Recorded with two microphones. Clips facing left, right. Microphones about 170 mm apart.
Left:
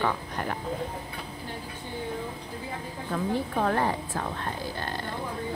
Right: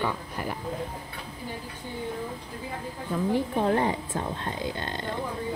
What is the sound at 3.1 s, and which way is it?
Speech, 15° right (ahead or behind).